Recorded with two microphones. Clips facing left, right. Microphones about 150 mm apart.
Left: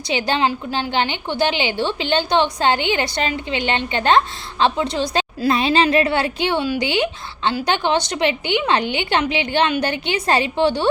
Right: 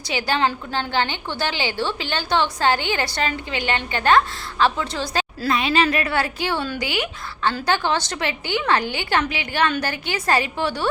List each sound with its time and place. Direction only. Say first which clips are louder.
0.1 s a woman's voice: left 2 dB; 20° left (ahead or behind)
5.5 s a woman's voice: left 3 dB; 30° left (ahead or behind)